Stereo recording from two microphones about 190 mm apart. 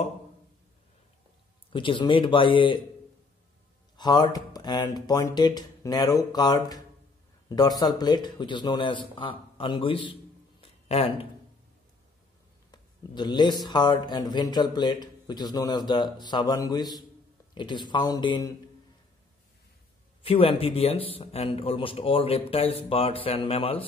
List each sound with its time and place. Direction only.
1.7 s a man's voice: 25° left (ahead or behind)
3.9 s a man's voice: 20° left (ahead or behind)
12.7 s a man's voice: 25° left (ahead or behind)
20.2 s a man's voice: 30° left (ahead or behind)